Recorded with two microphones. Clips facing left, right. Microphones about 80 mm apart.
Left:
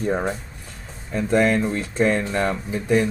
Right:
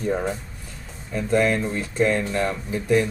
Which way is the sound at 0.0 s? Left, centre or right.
Left.